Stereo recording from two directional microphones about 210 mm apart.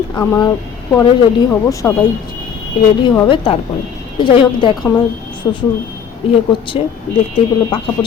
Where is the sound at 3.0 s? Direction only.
20° left (ahead or behind).